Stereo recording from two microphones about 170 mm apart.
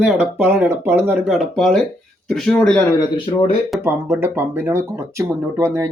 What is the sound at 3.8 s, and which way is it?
Speech, 15° right (ahead or behind).